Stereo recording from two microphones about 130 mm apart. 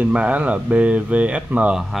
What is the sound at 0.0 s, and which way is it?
Speech, 10° right (ahead or behind).